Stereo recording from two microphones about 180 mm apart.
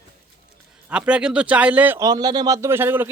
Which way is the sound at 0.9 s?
5° right (ahead or behind).